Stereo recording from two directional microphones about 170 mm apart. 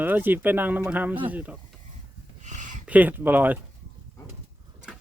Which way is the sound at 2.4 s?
45° right (ahead or behind).